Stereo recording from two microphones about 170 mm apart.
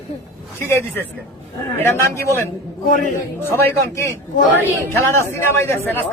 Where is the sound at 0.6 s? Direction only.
15° left (ahead or behind).